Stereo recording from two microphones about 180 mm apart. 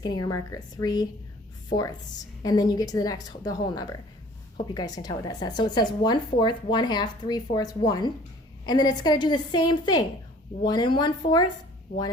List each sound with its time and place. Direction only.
0.0 s speech: 20° left (ahead or behind)
2.4 s speech: 20° left (ahead or behind)